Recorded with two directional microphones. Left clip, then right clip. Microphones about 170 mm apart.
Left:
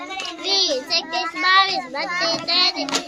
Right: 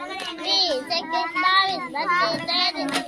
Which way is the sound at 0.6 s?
20° left (ahead or behind).